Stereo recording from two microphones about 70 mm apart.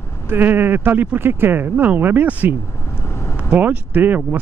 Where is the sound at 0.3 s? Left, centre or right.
Right.